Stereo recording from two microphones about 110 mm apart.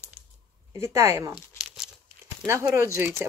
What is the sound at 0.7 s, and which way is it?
Speech, 25° right (ahead or behind).